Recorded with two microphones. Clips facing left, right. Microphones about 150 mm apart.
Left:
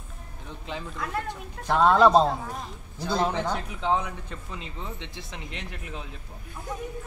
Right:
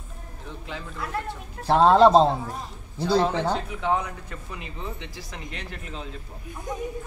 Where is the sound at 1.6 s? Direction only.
30° right (ahead or behind).